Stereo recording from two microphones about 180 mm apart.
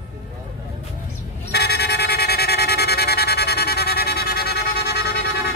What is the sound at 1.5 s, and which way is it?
Music, 65° left (ahead or behind).